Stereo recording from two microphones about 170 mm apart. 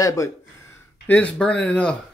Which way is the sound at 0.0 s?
20° left (ahead or behind).